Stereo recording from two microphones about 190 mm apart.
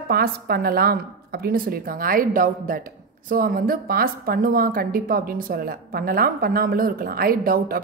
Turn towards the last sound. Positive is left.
turn(degrees=-50)  # may be behind; listen again after turning